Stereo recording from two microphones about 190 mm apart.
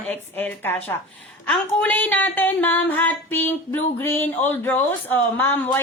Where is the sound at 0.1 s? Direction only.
10° left (ahead or behind).